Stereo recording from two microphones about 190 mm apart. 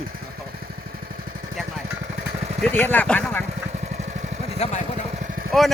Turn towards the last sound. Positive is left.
turn(degrees=0)  # may be behind; listen again after turning